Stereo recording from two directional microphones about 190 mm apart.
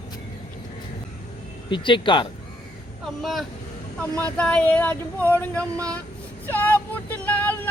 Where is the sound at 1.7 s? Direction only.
25° left (ahead or behind).